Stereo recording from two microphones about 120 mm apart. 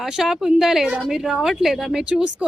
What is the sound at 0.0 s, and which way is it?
A woman's voice, 5° right (ahead or behind).